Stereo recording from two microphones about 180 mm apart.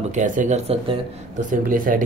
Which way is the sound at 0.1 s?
40° right (ahead or behind).